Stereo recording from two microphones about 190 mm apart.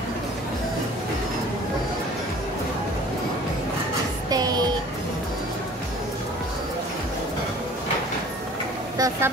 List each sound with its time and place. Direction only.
4.3 s music: 20° right (ahead or behind)
8.9 s vehicle: 20° right (ahead or behind)